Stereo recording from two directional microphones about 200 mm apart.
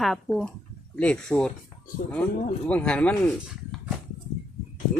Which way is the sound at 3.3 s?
Centre (ahead or behind).